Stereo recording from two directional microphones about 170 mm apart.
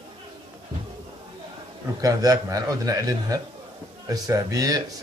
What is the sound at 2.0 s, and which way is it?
A man's voice, 20° right (ahead or behind).